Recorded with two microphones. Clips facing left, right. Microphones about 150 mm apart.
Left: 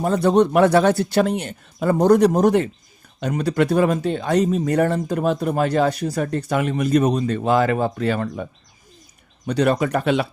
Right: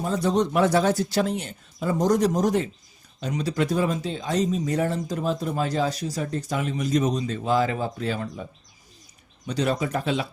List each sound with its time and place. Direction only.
0.0 s speech: 60° left (ahead or behind)
9.5 s speech: 60° left (ahead or behind)